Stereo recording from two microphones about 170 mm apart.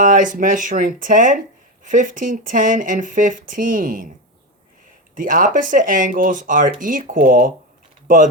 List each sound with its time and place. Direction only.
0.0 s speech: 50° right (ahead or behind)
5.1 s speech: 50° right (ahead or behind)